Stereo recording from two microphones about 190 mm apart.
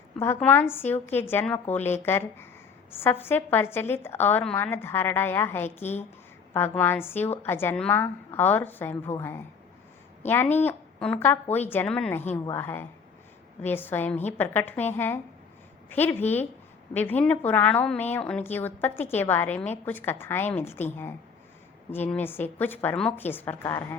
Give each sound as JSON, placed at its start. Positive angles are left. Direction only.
{"t": 0.7, "sound": "a woman's voice", "side_deg": 10}